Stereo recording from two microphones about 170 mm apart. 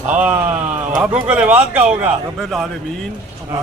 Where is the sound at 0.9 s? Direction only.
5° right (ahead or behind).